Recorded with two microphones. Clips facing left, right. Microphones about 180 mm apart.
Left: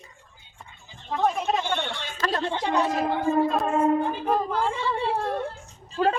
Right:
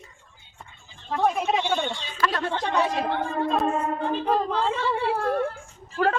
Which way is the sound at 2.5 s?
15° left (ahead or behind).